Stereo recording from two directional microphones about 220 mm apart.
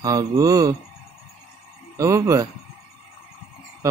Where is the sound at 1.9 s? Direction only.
15° right (ahead or behind).